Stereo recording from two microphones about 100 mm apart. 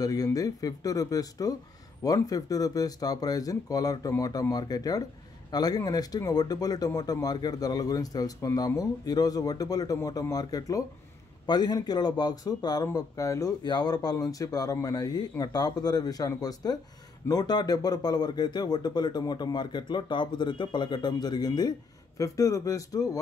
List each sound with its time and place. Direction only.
0.0 s speech: 40° left (ahead or behind)
13.7 s speech: 45° left (ahead or behind)